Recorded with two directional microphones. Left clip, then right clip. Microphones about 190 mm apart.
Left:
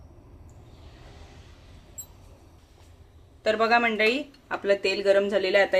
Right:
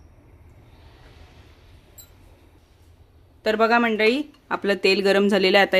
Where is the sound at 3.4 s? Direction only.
40° right (ahead or behind).